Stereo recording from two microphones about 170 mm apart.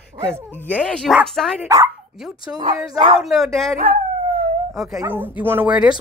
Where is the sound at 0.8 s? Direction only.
5° left (ahead or behind).